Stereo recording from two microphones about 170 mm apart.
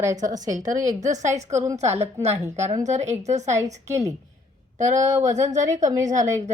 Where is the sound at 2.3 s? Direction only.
15° right (ahead or behind).